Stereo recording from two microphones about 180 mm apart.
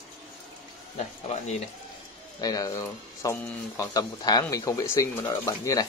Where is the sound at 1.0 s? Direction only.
35° left (ahead or behind).